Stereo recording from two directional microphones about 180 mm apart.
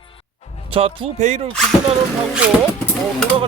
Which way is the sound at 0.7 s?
30° right (ahead or behind).